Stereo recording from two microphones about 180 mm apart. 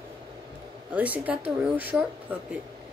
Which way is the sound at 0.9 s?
10° right (ahead or behind).